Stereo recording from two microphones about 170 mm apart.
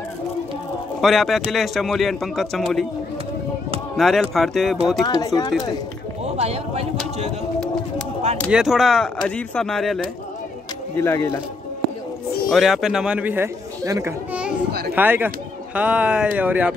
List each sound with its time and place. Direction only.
1.0 s a man's voice: centre (ahead or behind)
3.9 s a man's voice: centre (ahead or behind)
5.0 s speech: 20° left (ahead or behind)
6.3 s speech: 40° right (ahead or behind)
8.5 s a man's voice: 5° right (ahead or behind)
11.0 s speech: 15° left (ahead or behind)
12.4 s a man's voice: centre (ahead or behind)